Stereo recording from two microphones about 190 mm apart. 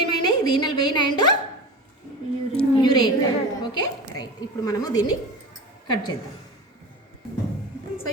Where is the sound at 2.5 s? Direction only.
25° left (ahead or behind).